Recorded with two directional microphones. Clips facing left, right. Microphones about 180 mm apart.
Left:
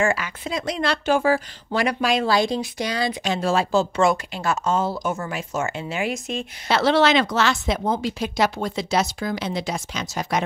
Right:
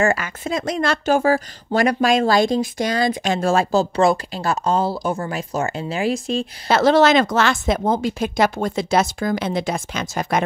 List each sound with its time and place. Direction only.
0.0 s speech: 45° right (ahead or behind)
6.7 s speech: 45° right (ahead or behind)